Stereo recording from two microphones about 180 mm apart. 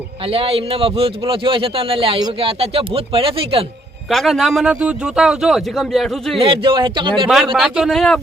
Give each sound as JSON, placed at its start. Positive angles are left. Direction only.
{"t": 0.3, "sound": "speech", "side_deg": -30}
{"t": 4.1, "sound": "a man's voice", "side_deg": 0}
{"t": 6.4, "sound": "speech", "side_deg": -30}
{"t": 7.5, "sound": "a man's voice", "side_deg": 0}